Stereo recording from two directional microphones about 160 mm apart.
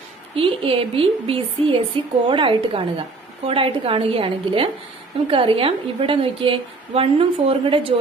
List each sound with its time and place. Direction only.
0.4 s a woman's voice: 35° right (ahead or behind)